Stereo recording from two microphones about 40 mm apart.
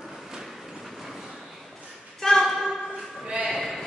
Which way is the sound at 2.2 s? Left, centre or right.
Centre.